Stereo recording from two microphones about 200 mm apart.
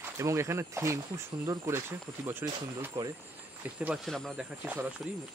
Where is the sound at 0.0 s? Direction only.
15° right (ahead or behind).